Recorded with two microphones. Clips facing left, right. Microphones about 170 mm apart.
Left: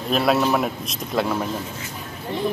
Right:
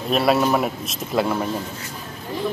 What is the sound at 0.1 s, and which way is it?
Speech, centre (ahead or behind).